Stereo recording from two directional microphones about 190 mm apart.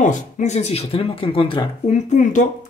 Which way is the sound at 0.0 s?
40° left (ahead or behind).